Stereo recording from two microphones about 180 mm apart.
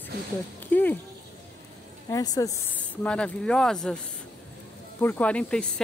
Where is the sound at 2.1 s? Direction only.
20° left (ahead or behind).